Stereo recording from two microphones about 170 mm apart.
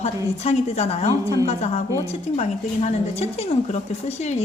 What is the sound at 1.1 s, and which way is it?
Speech, 20° right (ahead or behind).